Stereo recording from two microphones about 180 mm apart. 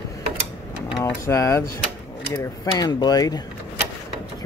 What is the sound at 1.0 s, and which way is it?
Speech, 15° left (ahead or behind).